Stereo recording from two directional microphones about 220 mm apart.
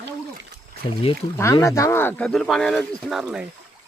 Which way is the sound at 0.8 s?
25° left (ahead or behind).